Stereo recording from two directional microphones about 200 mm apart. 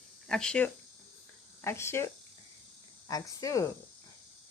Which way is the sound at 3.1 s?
15° left (ahead or behind).